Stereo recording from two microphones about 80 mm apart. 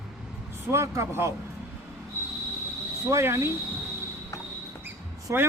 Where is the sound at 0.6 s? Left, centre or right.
Right.